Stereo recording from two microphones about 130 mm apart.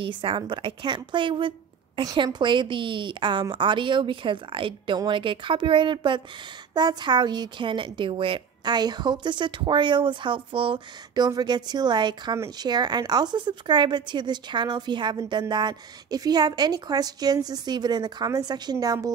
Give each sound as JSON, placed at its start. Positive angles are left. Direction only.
{"t": 0.0, "sound": "a woman's voice", "side_deg": -40}